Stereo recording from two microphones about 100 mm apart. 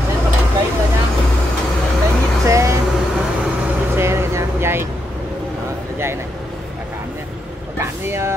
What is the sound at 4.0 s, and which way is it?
Vehicle, 25° right (ahead or behind).